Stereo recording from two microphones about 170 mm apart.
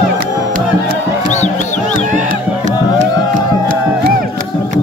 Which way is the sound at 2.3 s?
45° right (ahead or behind).